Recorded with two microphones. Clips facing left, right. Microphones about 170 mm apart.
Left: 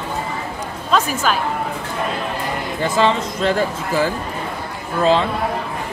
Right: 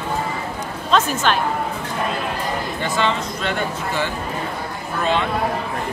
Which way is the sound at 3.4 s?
35° left (ahead or behind).